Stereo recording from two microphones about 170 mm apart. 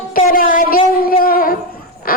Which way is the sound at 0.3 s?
55° left (ahead or behind).